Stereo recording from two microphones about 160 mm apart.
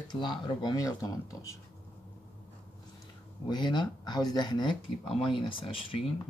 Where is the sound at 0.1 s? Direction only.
30° left (ahead or behind).